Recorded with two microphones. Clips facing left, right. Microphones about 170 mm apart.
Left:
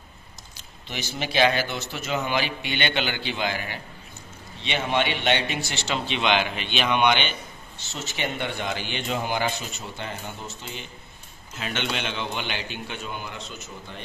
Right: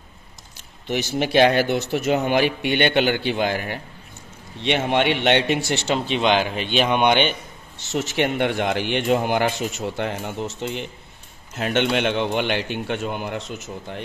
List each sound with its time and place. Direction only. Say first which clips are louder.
0.8 s speech: right 9 dB; 60° right (ahead or behind)
4.6 s speech: right 5 dB; 65° right (ahead or behind)
7.9 s speech: right 9 dB; 85° right
11.5 s speech: right 9 dB; 60° right (ahead or behind)